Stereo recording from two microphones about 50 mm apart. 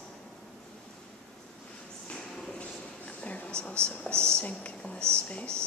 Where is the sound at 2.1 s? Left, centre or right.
Centre.